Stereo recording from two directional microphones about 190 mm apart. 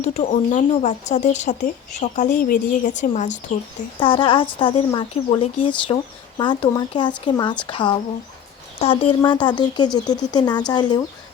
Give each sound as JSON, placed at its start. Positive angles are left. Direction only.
{"t": 0.0, "sound": "speech", "side_deg": 40}
{"t": 4.0, "sound": "speech", "side_deg": 25}